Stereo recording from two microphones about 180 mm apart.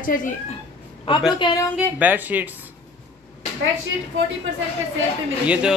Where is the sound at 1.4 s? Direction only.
25° left (ahead or behind).